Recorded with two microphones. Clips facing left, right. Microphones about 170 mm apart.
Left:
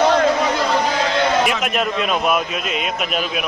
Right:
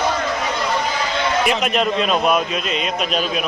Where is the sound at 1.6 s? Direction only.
5° left (ahead or behind).